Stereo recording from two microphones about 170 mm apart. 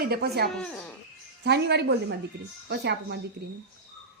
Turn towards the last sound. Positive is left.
turn(degrees=-90)